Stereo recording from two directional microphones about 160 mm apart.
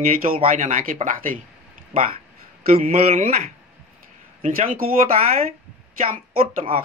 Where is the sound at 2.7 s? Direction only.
40° right (ahead or behind).